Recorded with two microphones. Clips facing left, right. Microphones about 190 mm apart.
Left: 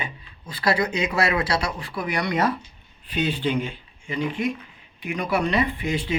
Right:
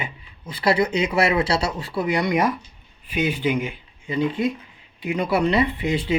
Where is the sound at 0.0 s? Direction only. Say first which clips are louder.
Right 1 dB; 20° right (ahead or behind).